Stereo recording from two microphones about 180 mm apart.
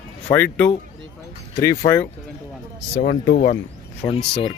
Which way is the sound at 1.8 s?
30° left (ahead or behind).